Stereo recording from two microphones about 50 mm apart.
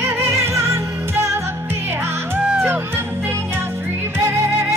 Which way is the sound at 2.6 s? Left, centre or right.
Right.